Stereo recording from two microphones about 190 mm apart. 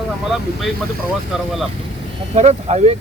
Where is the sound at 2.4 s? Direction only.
35° right (ahead or behind).